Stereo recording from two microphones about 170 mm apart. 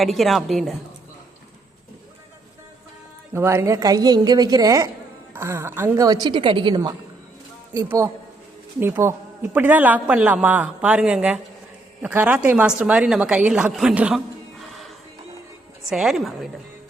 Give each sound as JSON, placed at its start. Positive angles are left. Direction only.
{"t": 0.0, "sound": "a woman's voice", "side_deg": 0}
{"t": 3.3, "sound": "a woman's voice", "side_deg": -15}
{"t": 14.6, "sound": "music", "side_deg": 0}
{"t": 15.9, "sound": "a woman's voice", "side_deg": 0}